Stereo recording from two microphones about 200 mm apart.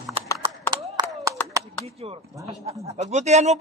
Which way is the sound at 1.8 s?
30° right (ahead or behind).